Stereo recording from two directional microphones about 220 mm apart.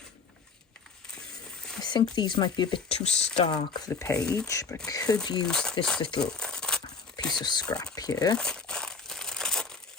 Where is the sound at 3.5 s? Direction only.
20° left (ahead or behind).